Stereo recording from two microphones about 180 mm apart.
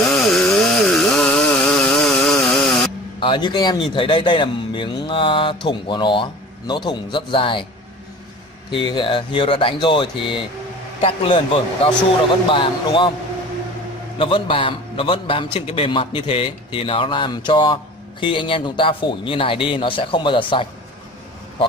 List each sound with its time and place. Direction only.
0.1 s chainsaw: centre (ahead or behind)
3.2 s a man's voice: 25° left (ahead or behind)
8.6 s a man's voice: 25° left (ahead or behind)
14.1 s a man's voice: 30° left (ahead or behind)